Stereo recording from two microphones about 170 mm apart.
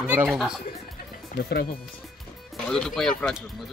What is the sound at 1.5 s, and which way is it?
Speech, 60° left (ahead or behind).